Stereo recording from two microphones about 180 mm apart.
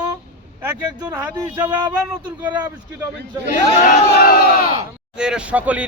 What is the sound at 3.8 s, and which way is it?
Crowd, 55° left (ahead or behind).